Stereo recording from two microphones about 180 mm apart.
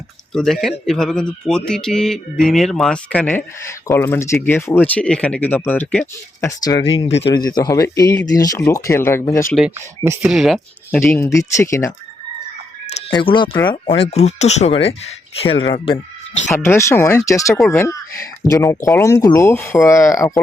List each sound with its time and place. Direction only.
0.3 s speech: centre (ahead or behind)
9.7 s speech: 15° right (ahead or behind)
10.2 s speech: centre (ahead or behind)
11.0 s speech: 15° left (ahead or behind)
13.1 s speech: 25° left (ahead or behind)
16.5 s speech: 15° left (ahead or behind)